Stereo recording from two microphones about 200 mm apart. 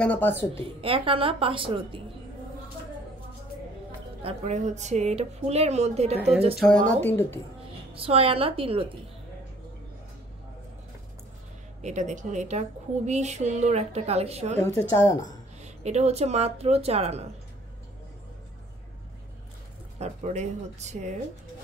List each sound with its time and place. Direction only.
0.0 s speech: 10° left (ahead or behind)
0.6 s a woman's voice: 25° right (ahead or behind)
4.2 s speech: 30° right (ahead or behind)
6.1 s speech: 5° right (ahead or behind); by 7.3 s 10° left (ahead or behind)
7.9 s a woman's voice: 30° right (ahead or behind)
11.8 s speech: 35° right (ahead or behind)
14.7 s speech: 15° left (ahead or behind)
15.6 s speech: 35° right (ahead or behind)
20.0 s speech: 35° right (ahead or behind)